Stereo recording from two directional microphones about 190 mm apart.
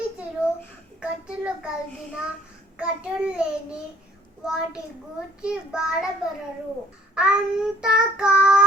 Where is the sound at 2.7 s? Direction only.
5° right (ahead or behind).